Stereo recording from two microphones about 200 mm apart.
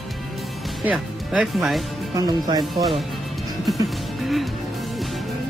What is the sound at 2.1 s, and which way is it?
Speech, 20° right (ahead or behind).